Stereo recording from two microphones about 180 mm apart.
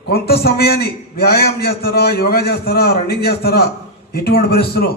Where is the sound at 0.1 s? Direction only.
60° left (ahead or behind).